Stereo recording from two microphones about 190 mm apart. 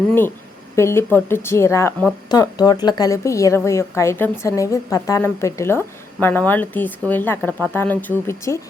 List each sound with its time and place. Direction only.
0.8 s a woman's voice: 15° left (ahead or behind)